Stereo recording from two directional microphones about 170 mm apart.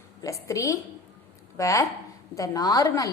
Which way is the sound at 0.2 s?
20° left (ahead or behind).